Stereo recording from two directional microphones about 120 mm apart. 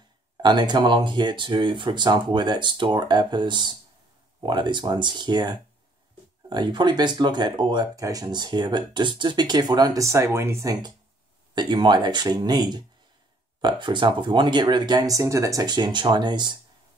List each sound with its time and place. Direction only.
0.4 s speech: 40° right (ahead or behind)
11.5 s speech: 40° right (ahead or behind)